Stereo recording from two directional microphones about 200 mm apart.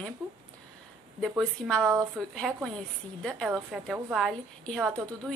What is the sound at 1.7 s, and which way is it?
A woman's voice, centre (ahead or behind).